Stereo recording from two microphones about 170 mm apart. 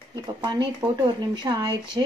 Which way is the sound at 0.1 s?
25° right (ahead or behind).